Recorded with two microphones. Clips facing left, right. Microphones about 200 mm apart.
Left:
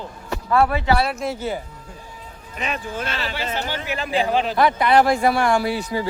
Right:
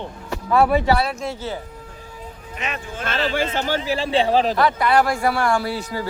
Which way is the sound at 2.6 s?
35° left (ahead or behind).